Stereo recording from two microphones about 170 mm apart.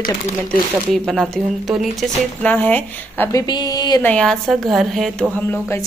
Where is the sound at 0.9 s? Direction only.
Centre (ahead or behind).